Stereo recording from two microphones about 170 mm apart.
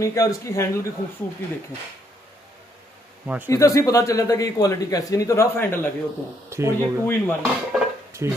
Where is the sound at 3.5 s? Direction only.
20° left (ahead or behind).